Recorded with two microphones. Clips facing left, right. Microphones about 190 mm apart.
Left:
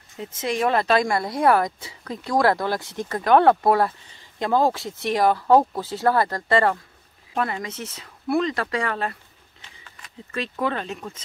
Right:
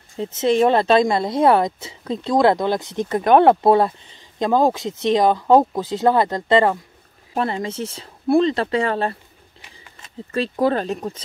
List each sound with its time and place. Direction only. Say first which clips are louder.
0.1 s speech: right 8 dB; 25° right (ahead or behind)